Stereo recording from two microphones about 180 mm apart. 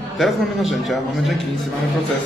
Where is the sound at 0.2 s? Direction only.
Centre (ahead or behind).